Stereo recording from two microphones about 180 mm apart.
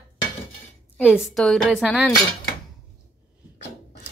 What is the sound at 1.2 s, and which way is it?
Speech, centre (ahead or behind).